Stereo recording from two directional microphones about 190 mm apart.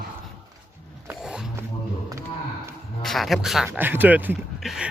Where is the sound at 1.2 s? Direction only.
5° right (ahead or behind).